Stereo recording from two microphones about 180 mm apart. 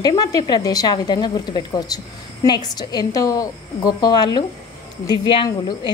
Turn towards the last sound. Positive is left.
turn(degrees=25)  # may be behind; listen again after turning